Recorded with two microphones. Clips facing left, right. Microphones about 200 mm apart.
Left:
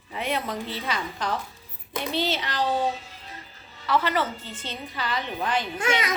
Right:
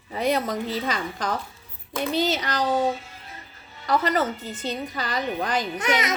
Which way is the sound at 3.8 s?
40° right (ahead or behind).